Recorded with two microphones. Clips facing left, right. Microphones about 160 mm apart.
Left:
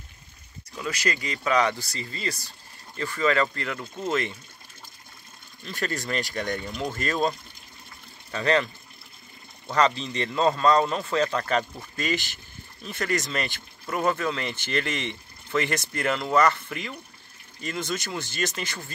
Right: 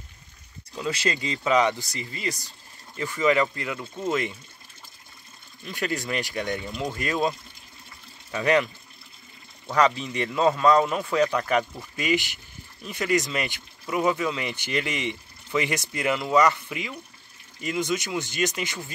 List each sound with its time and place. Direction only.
0.7 s speech: 25° right (ahead or behind); by 4.4 s 10° right (ahead or behind)
5.6 s speech: 15° right (ahead or behind)
9.7 s speech: 10° right (ahead or behind)